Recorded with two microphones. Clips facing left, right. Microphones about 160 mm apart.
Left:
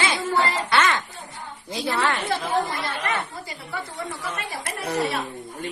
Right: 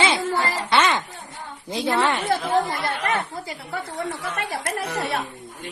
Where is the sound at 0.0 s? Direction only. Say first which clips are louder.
Right 1 dB; 25° right (ahead or behind).